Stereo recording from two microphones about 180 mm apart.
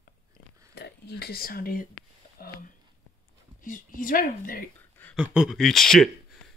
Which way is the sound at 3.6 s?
50° left (ahead or behind).